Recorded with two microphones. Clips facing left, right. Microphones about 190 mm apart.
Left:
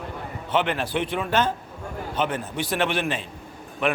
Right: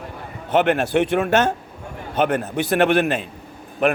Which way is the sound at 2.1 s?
60° right (ahead or behind).